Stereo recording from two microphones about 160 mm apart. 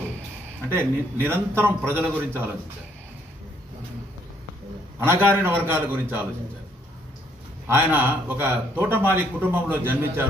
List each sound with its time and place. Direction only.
0.7 s speech: 15° right (ahead or behind)
5.0 s speech: 15° right (ahead or behind)
7.6 s speech: 15° right (ahead or behind)